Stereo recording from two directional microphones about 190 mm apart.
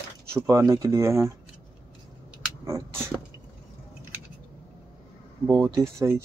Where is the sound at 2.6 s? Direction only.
15° right (ahead or behind).